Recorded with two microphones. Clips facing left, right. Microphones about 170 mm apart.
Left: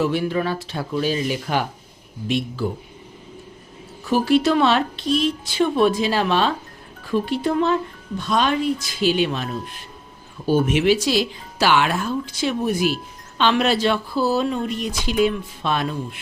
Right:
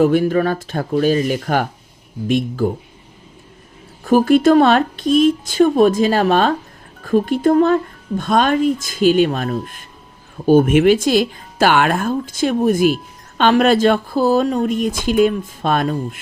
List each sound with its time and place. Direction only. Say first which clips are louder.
0.0 s speech: right 7 dB; 45° right (ahead or behind)
4.0 s speech: right 6 dB; 50° right (ahead or behind)